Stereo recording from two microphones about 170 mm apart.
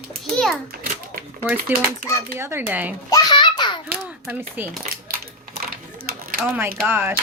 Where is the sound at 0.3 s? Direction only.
Centre (ahead or behind).